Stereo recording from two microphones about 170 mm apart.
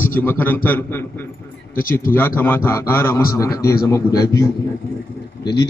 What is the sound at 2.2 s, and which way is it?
A man's voice, 15° left (ahead or behind).